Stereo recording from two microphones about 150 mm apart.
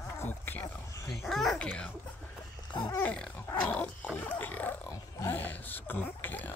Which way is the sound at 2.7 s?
25° left (ahead or behind).